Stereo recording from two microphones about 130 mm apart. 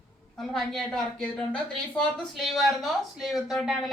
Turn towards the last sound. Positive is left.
turn(degrees=-5)  # may be behind; listen again after turning